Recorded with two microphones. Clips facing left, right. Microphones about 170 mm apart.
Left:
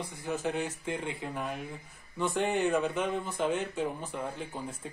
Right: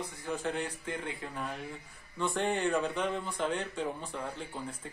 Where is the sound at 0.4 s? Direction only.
10° left (ahead or behind).